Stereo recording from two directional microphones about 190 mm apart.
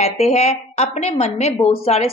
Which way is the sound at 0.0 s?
35° left (ahead or behind).